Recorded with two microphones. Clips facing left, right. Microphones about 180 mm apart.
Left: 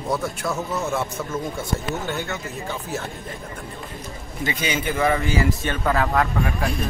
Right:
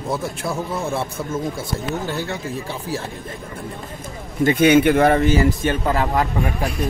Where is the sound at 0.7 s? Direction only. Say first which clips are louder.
Right 1 dB; 30° right (ahead or behind).